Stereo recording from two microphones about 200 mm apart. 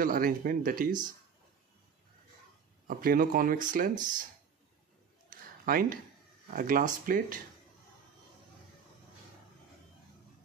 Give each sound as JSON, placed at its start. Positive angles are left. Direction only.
{"t": 0.0, "sound": "speech", "side_deg": -45}
{"t": 2.9, "sound": "speech", "side_deg": -45}
{"t": 5.3, "sound": "a sound", "side_deg": -45}
{"t": 6.5, "sound": "speech", "side_deg": -40}